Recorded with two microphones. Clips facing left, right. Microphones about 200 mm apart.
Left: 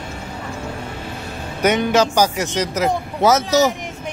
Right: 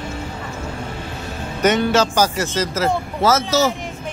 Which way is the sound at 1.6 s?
10° left (ahead or behind).